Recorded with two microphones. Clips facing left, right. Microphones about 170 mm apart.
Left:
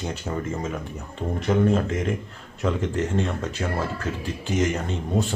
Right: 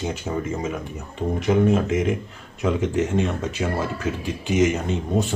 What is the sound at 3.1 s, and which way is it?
Speech, 15° right (ahead or behind).